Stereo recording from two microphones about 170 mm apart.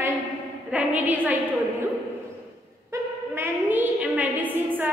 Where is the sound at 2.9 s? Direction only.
10° right (ahead or behind).